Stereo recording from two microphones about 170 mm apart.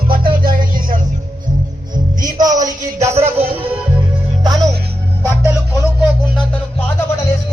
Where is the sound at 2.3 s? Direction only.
50° right (ahead or behind).